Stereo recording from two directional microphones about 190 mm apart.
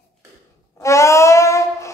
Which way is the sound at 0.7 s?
15° left (ahead or behind).